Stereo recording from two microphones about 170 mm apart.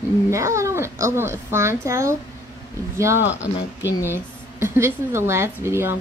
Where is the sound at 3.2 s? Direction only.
90° left.